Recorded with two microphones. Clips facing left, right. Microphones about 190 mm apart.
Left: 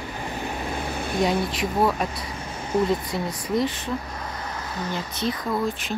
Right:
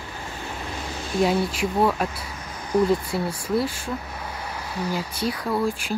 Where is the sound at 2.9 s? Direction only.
5° right (ahead or behind).